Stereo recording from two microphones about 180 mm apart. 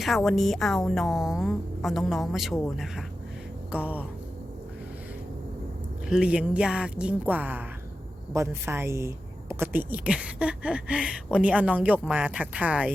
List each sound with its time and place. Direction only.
0.0 s a woman's voice: centre (ahead or behind)
6.1 s speech: 5° right (ahead or behind)